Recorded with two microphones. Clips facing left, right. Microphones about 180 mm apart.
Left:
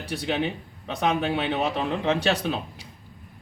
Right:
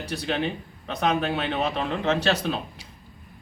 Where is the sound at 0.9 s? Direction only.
15° left (ahead or behind).